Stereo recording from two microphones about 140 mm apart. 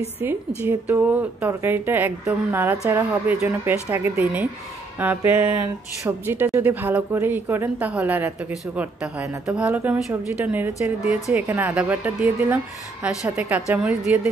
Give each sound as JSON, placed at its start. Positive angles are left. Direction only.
{"t": 0.6, "sound": "speech", "side_deg": -15}